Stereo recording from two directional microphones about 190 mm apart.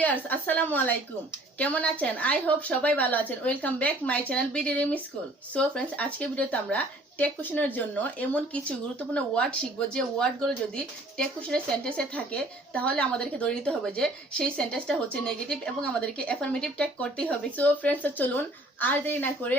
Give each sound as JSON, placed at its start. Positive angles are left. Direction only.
{"t": 0.0, "sound": "a woman's voice", "side_deg": 10}